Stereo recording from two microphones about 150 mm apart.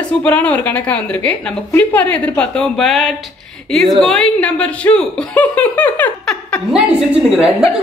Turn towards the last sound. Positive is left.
turn(degrees=-5)  # may be behind; listen again after turning